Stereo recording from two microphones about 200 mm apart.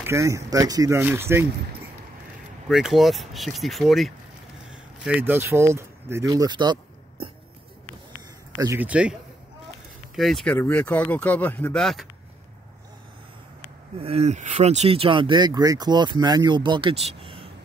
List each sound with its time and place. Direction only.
0.0 s speech: 15° right (ahead or behind)
2.7 s speech: centre (ahead or behind); by 7.2 s 20° right (ahead or behind)
8.5 s speech: 10° right (ahead or behind)
10.1 s speech: centre (ahead or behind)
13.9 s speech: 30° right (ahead or behind)